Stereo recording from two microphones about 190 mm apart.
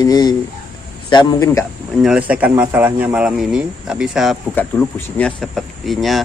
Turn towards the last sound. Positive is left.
turn(degrees=0)  # may be behind; listen again after turning